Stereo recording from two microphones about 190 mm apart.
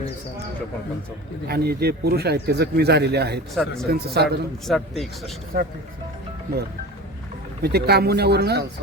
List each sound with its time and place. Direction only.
1.5 s a man's voice: 55° right (ahead or behind)
3.5 s a man's voice: centre (ahead or behind)
3.8 s a man's voice: 55° right (ahead or behind)
4.6 s a man's voice: centre (ahead or behind)
5.5 s speech: 50° right (ahead or behind)
7.6 s a man's voice: 55° right (ahead or behind)